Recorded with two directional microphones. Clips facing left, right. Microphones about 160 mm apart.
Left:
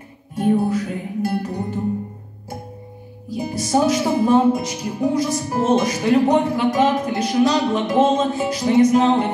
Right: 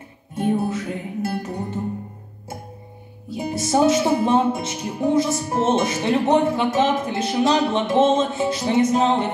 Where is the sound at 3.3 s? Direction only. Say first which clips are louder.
Left 1 dB; 25° right (ahead or behind).